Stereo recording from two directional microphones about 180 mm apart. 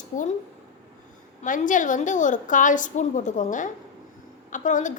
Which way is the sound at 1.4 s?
45° left (ahead or behind).